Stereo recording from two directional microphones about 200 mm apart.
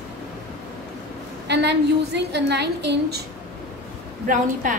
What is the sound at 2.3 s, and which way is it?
Speech, 60° right (ahead or behind).